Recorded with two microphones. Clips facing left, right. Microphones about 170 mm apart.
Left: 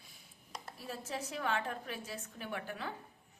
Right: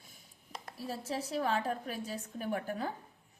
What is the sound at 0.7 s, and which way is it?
A woman's voice, 35° right (ahead or behind).